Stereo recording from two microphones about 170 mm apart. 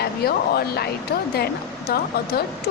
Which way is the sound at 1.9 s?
65° left (ahead or behind).